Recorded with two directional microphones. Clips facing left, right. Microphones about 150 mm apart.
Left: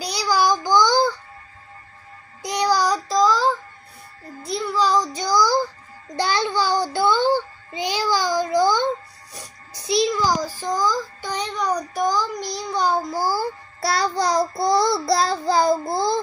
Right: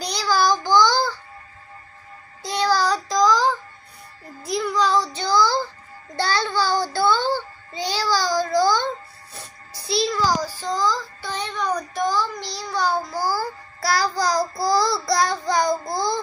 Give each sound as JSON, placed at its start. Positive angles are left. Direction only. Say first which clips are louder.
{"t": 0.0, "sound": "child singing", "louder": "even", "side_deg": 10}
{"t": 2.4, "sound": "child singing", "louder": "left 1 dB", "side_deg": 15}
{"t": 3.1, "sound": "child singing", "louder": "right 1 dB", "side_deg": 5}
{"t": 4.6, "sound": "child singing", "louder": "even", "side_deg": 5}
{"t": 6.1, "sound": "music", "louder": "left 1 dB", "side_deg": 15}